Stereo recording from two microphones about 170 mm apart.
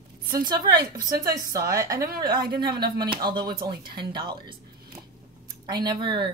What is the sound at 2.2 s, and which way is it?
Speech, 65° right (ahead or behind).